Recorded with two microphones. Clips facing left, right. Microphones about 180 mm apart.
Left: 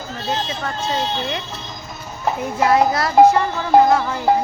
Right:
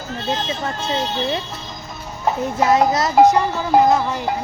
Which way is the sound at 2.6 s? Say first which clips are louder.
Even; 20° right (ahead or behind).